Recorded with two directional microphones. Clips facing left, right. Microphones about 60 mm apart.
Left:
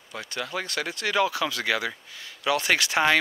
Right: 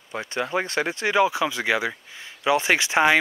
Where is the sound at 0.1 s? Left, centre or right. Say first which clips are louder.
Right 6 dB; right.